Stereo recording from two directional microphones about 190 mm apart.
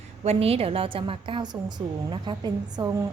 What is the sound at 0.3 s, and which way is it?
A woman's voice, 30° right (ahead or behind).